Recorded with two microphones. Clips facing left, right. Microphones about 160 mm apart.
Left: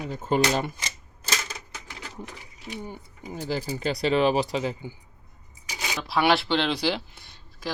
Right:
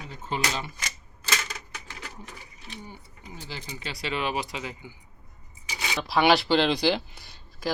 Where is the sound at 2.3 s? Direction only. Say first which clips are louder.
Left 5 dB; 15° left (ahead or behind).